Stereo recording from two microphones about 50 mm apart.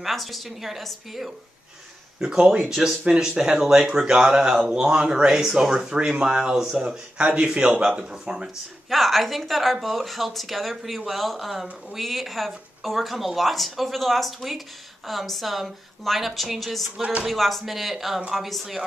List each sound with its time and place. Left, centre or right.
0.0 s speech: centre
2.1 s speech: centre
2.7 s speech: centre
7.2 s a man's voice: centre
8.9 s speech: centre